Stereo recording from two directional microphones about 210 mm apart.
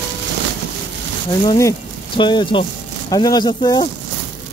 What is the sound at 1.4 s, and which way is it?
Speech, 20° left (ahead or behind).